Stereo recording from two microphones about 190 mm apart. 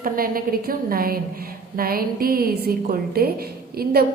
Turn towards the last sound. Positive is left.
turn(degrees=-55)  # may be behind; listen again after turning